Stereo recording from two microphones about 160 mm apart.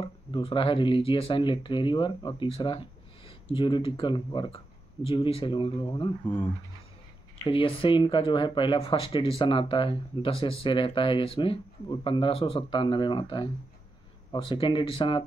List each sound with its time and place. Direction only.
0.0 s speech: 35° left (ahead or behind)
6.2 s speech: 10° left (ahead or behind)
7.4 s speech: 35° left (ahead or behind)